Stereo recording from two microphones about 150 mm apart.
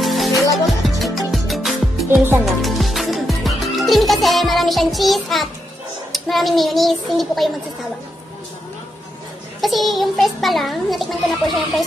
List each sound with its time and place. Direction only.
0.0 s music: centre (ahead or behind)
6.1 s a child's voice: centre (ahead or behind)
9.6 s a child's voice: centre (ahead or behind)